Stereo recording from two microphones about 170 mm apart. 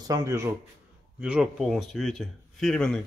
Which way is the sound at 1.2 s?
5° right (ahead or behind).